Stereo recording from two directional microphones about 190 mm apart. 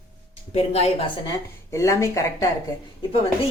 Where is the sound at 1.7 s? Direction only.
15° left (ahead or behind).